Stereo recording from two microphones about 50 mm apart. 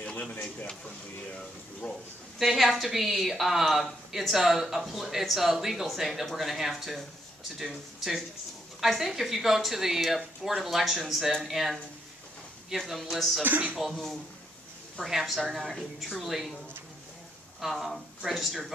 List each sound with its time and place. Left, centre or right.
0.0 s speech: left
2.3 s speech: centre
15.0 s speech: centre
17.6 s speech: centre